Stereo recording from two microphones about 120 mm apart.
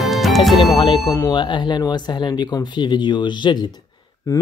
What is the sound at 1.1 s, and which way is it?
Speech, 25° left (ahead or behind).